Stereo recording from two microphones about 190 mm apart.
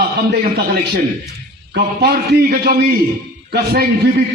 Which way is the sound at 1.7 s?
55° right (ahead or behind).